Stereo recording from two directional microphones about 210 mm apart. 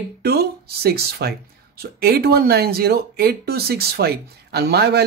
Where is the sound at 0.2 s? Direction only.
50° right (ahead or behind).